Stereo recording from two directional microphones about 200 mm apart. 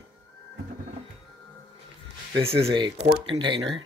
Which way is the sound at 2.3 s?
25° right (ahead or behind).